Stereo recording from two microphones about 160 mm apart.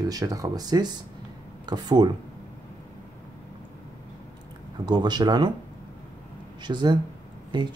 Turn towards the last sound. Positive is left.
turn(degrees=-25)  # may be behind; listen again after turning